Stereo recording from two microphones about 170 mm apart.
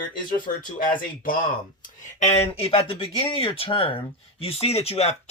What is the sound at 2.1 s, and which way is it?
Speech, 40° left (ahead or behind).